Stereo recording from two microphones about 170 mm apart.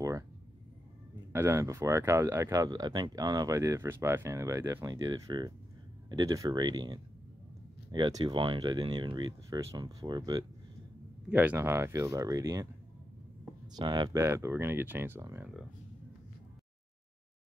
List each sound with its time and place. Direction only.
1.3 s speech: 15° right (ahead or behind)
11.2 s speech: 10° right (ahead or behind)
13.7 s speech: 25° right (ahead or behind)